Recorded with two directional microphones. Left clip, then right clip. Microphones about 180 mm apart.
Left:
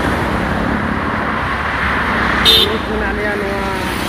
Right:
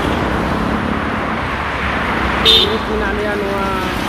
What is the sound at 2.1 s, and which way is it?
Vehicle, 55° left (ahead or behind).